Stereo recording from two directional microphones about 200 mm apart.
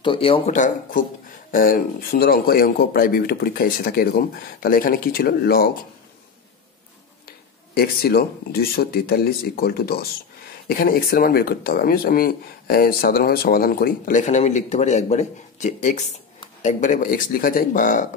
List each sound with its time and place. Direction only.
0.0 s speech: 25° left (ahead or behind); by 5.7 s 50° left (ahead or behind)
7.2 s speech: 50° left (ahead or behind)